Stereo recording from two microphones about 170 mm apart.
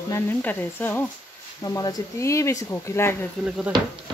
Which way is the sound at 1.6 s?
20° left (ahead or behind).